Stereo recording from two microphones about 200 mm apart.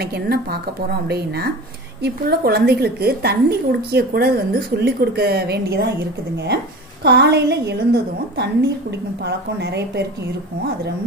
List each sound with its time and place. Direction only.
0.0 s a woman's voice: 50° right (ahead or behind)